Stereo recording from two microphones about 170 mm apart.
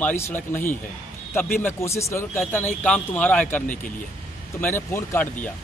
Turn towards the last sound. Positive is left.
turn(degrees=15)  # may be behind; listen again after turning